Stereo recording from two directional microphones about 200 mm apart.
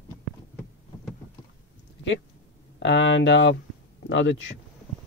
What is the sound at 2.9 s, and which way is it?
Speech, 65° left (ahead or behind).